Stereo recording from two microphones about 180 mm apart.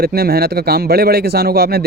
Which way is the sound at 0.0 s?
60° right (ahead or behind).